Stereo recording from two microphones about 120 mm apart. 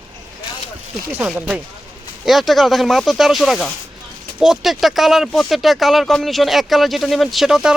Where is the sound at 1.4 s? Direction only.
15° right (ahead or behind).